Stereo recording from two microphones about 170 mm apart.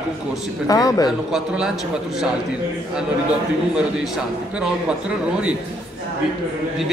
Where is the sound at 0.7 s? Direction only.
20° left (ahead or behind).